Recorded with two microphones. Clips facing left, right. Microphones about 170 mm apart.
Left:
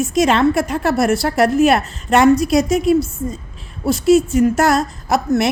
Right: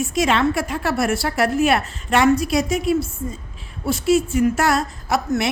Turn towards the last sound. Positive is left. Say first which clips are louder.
# left 5 dB
turn(degrees=45)  # may be behind; listen again after turning